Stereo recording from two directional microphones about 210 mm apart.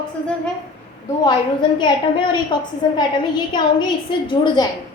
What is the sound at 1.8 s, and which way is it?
A woman's voice, 20° left (ahead or behind).